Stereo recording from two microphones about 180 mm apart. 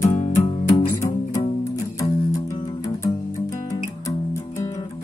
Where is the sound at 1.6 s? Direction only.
15° left (ahead or behind).